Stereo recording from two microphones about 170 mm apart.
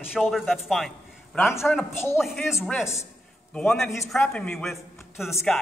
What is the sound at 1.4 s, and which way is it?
Speech, 15° left (ahead or behind).